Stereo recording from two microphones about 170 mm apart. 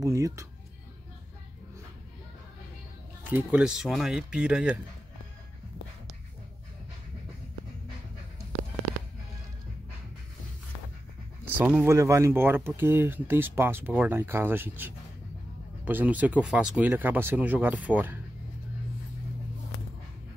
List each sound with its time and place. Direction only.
0.0 s speech: 20° right (ahead or behind)
3.3 s speech: 10° right (ahead or behind)
11.4 s speech: 10° right (ahead or behind)